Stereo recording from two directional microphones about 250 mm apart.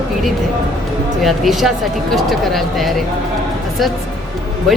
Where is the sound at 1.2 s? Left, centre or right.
Centre.